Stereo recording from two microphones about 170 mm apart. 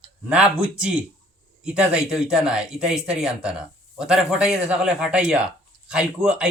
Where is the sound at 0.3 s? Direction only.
5° right (ahead or behind).